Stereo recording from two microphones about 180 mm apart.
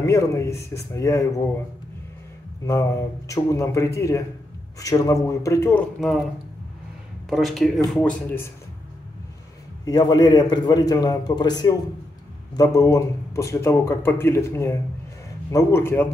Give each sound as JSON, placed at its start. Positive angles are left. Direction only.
{"t": 0.0, "sound": "a man's voice", "side_deg": 15}
{"t": 2.6, "sound": "a man's voice", "side_deg": 15}
{"t": 5.9, "sound": "speech", "side_deg": 0}
{"t": 7.2, "sound": "speech", "side_deg": 0}
{"t": 9.8, "sound": "a man's voice", "side_deg": 20}